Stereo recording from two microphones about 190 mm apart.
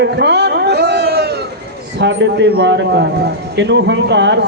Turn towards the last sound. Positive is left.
turn(degrees=-65)  # may be behind; listen again after turning